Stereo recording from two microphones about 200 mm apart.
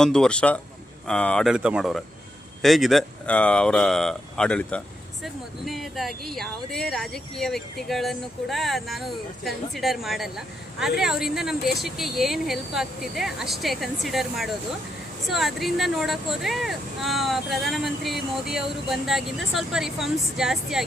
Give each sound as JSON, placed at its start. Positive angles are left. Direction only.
{"t": 0.0, "sound": "speech", "side_deg": 5}